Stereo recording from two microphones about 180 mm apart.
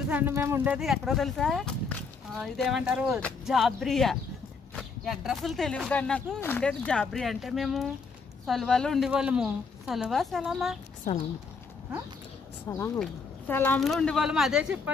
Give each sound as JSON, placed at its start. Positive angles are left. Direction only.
{"t": 0.1, "sound": "speech", "side_deg": -10}
{"t": 0.7, "sound": "a woman's voice", "side_deg": 0}
{"t": 12.6, "sound": "a woman's voice", "side_deg": 15}